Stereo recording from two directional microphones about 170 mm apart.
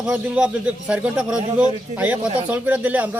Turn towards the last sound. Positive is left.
turn(degrees=-10)  # may be behind; listen again after turning